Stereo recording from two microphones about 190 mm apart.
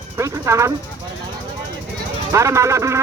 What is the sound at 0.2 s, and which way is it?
Speech, 15° right (ahead or behind).